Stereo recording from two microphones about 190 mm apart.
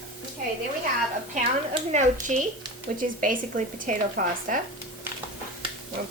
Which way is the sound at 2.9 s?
55° right (ahead or behind).